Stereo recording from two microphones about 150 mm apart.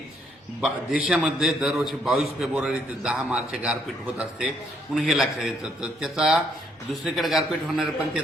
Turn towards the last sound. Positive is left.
turn(degrees=0)  # may be behind; listen again after turning